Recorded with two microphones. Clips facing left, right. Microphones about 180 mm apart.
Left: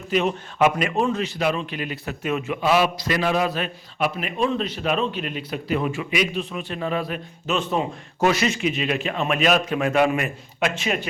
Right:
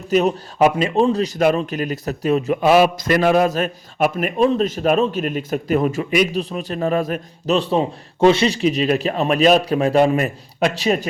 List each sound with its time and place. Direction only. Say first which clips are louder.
0.1 s a man's voice: right 5 dB; 40° right (ahead or behind)
2.6 s a man's voice: right 5 dB; 50° right (ahead or behind)